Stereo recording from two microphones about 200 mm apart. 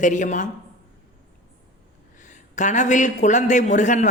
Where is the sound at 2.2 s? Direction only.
35° left (ahead or behind).